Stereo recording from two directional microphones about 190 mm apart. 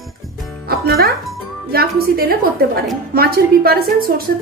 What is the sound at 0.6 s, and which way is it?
A woman's voice, 55° right (ahead or behind).